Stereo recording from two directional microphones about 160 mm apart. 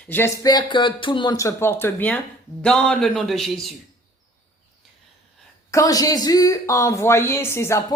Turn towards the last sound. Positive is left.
turn(degrees=15)  # may be behind; listen again after turning